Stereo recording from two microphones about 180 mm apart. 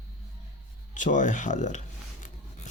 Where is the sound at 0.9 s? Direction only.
45° left (ahead or behind).